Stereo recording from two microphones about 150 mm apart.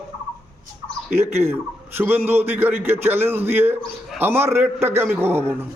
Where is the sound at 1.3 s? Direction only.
15° right (ahead or behind).